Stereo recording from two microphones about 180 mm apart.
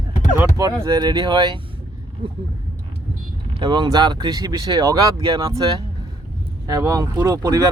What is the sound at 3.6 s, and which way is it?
Speech, 25° right (ahead or behind).